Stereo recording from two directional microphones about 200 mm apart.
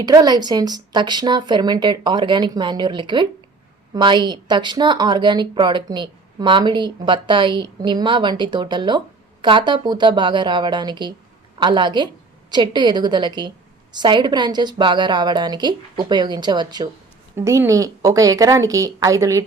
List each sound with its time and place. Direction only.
0.0 s a woman's voice: 20° right (ahead or behind)